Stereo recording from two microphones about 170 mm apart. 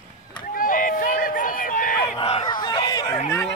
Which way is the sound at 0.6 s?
55° left (ahead or behind).